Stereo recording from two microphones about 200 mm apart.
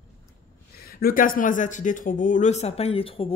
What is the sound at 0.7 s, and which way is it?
Speech, 50° left (ahead or behind).